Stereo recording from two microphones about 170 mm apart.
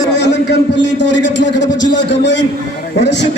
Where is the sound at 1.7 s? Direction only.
25° left (ahead or behind).